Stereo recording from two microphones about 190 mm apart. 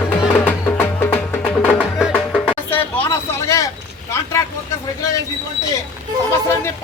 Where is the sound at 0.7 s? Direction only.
10° left (ahead or behind).